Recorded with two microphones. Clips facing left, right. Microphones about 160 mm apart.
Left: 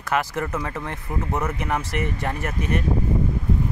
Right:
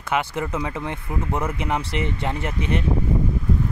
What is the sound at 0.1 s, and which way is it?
Speech, 15° right (ahead or behind).